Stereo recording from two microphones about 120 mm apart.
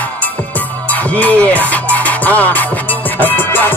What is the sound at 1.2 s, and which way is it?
Music, 10° left (ahead or behind).